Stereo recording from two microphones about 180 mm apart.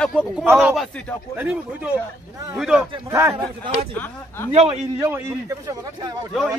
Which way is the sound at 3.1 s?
15° right (ahead or behind).